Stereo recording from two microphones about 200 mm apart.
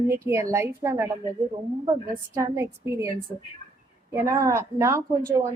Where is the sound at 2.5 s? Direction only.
15° right (ahead or behind).